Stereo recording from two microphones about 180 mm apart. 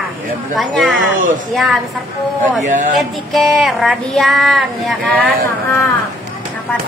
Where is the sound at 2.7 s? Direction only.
50° right (ahead or behind).